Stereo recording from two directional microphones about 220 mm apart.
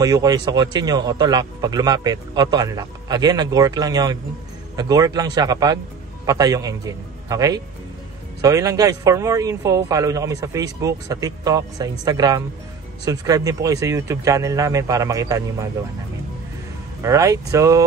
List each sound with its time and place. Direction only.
0.0 s a man's voice: 15° right (ahead or behind)
17.0 s speech: 15° right (ahead or behind)